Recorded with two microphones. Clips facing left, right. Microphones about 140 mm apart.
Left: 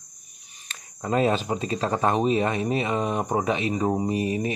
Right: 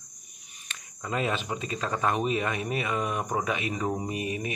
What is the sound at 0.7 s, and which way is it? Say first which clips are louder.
Speech: left 7 dB; 35° left (ahead or behind).